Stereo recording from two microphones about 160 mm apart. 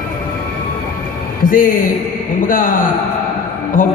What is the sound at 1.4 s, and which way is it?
A man's voice, 60° left (ahead or behind).